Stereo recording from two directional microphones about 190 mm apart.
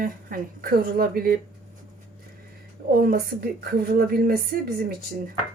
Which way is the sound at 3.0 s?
50° right (ahead or behind).